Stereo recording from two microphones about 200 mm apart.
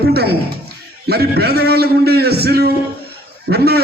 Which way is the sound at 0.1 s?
50° right (ahead or behind).